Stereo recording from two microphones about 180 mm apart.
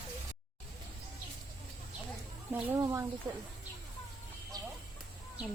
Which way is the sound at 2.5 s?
15° right (ahead or behind).